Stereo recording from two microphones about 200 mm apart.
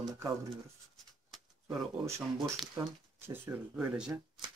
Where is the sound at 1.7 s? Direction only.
15° right (ahead or behind).